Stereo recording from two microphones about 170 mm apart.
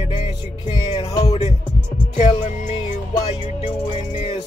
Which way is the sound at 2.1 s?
45° left (ahead or behind).